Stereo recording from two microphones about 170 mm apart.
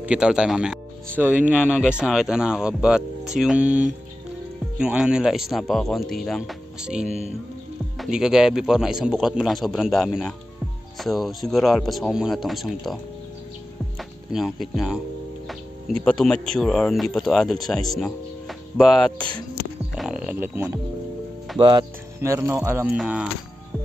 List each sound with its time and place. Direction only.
0.0 s speech: 5° right (ahead or behind)
7.1 s music: 40° right (ahead or behind)
8.0 s speech: 5° right (ahead or behind)
16.0 s speech: 5° left (ahead or behind); by 20.8 s 15° right (ahead or behind)
21.5 s speech: 30° right (ahead or behind)
22.2 s music: 15° right (ahead or behind)